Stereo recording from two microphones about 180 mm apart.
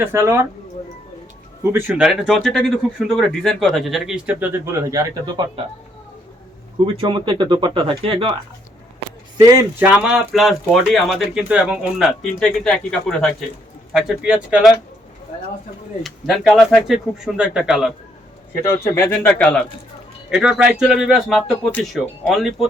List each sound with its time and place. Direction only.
0.0 s speech: 15° right (ahead or behind)
1.7 s speech: 10° right (ahead or behind)
2.0 s speech: centre (ahead or behind); by 5.5 s 20° right (ahead or behind)
6.8 s speech: 30° right (ahead or behind)
9.4 s speech: 20° right (ahead or behind)
9.8 s speech: 5° right (ahead or behind)
16.0 s speech: centre (ahead or behind)
18.7 s speech: 15° left (ahead or behind)
20.3 s speech: 5° right (ahead or behind)